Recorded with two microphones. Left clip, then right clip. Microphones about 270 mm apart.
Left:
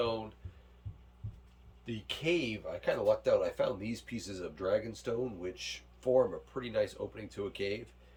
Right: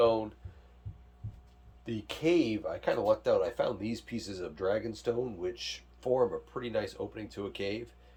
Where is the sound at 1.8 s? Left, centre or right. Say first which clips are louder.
Right 4 dB; centre.